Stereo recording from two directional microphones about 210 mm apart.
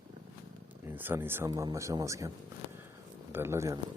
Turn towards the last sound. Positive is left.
turn(degrees=-15)  # may be behind; listen again after turning